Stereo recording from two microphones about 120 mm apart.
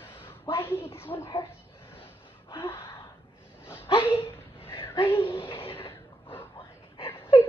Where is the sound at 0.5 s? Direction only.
20° left (ahead or behind).